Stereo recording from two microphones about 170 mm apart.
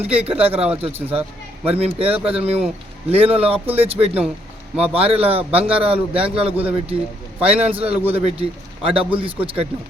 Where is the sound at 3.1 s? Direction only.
35° right (ahead or behind).